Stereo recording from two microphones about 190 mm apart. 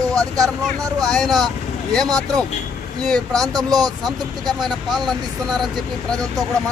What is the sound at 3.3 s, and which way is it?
Speech, 20° right (ahead or behind).